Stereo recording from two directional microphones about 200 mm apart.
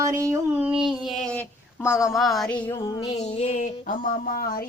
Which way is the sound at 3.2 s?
30° left (ahead or behind).